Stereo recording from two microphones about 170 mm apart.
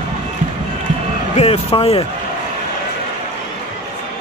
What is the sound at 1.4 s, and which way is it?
Speech, 35° left (ahead or behind).